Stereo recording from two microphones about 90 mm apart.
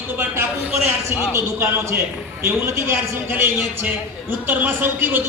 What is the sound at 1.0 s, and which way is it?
A man's voice, 30° right (ahead or behind).